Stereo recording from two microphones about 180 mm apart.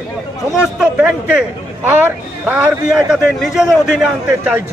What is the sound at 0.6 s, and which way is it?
A man's voice, 5° right (ahead or behind).